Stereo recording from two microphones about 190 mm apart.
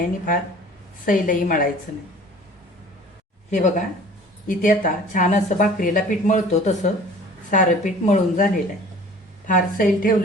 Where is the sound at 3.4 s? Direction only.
40° left (ahead or behind).